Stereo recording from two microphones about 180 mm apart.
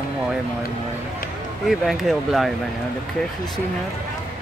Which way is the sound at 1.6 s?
Centre (ahead or behind).